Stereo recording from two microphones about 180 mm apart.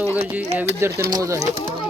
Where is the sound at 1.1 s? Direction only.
20° right (ahead or behind).